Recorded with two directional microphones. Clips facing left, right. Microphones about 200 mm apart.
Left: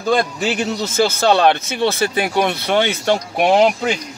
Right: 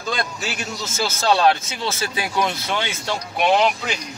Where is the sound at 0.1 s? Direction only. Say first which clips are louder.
Left 9 dB; 60° left (ahead or behind).